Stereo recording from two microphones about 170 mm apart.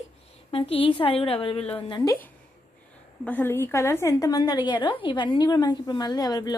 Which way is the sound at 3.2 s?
10° left (ahead or behind).